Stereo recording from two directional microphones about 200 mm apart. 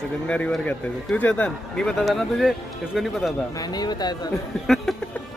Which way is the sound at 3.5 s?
20° left (ahead or behind).